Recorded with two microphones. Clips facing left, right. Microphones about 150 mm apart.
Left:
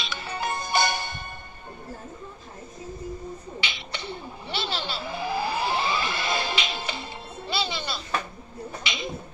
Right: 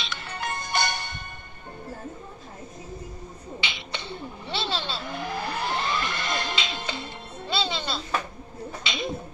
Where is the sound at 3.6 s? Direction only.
20° right (ahead or behind).